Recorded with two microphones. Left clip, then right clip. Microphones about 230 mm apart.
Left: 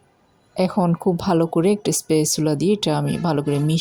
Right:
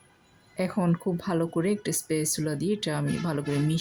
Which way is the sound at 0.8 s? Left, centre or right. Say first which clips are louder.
Left 9 dB; centre.